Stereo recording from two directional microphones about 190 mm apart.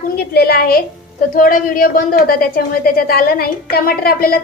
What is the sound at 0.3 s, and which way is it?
A woman's voice, 55° left (ahead or behind).